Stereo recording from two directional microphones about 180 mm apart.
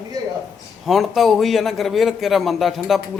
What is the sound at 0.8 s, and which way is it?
A man's voice, centre (ahead or behind).